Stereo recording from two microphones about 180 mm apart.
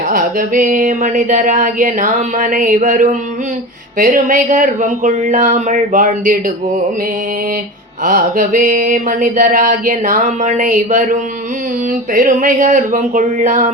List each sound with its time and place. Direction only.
0.1 s mantra: 50° right (ahead or behind)
8.0 s mantra: 50° right (ahead or behind)